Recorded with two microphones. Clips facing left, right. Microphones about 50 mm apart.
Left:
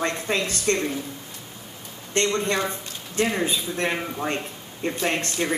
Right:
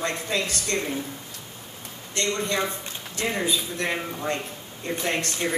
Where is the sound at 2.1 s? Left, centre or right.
Left.